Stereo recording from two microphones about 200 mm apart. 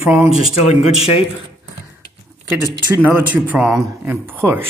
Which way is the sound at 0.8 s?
30° left (ahead or behind).